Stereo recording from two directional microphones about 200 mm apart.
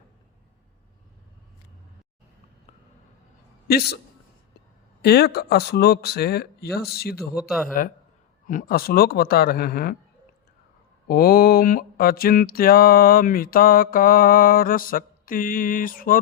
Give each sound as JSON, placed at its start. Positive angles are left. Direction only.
{"t": 3.7, "sound": "mantra", "side_deg": 50}
{"t": 5.0, "sound": "mantra", "side_deg": 55}
{"t": 7.2, "sound": "speech", "side_deg": 0}
{"t": 8.4, "sound": "mantra", "side_deg": 45}
{"t": 11.1, "sound": "mantra", "side_deg": 50}